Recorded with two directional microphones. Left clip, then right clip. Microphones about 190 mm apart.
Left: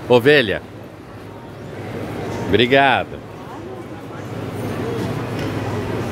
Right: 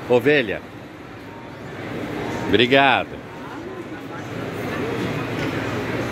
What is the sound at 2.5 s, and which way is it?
Speech, 5° left (ahead or behind).